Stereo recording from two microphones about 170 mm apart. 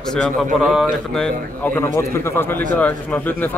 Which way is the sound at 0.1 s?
Centre (ahead or behind).